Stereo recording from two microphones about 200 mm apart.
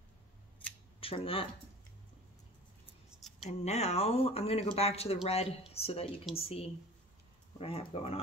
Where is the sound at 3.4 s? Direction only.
35° left (ahead or behind).